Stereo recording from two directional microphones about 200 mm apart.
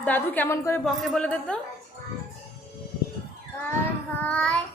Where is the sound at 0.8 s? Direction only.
Centre (ahead or behind).